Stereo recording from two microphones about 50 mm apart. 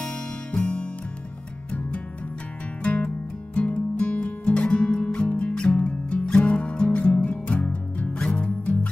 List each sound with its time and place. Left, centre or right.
0.0 s music: centre
2.8 s music: left